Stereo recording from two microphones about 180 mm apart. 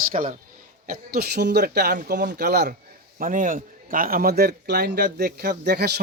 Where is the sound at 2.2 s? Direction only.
65° right (ahead or behind).